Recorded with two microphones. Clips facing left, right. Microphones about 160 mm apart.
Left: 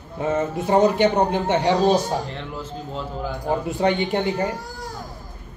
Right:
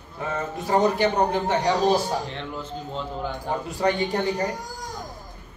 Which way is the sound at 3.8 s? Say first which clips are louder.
Left 1 dB; 20° left (ahead or behind).